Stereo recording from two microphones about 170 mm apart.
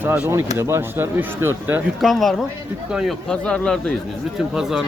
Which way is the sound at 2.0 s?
Centre (ahead or behind).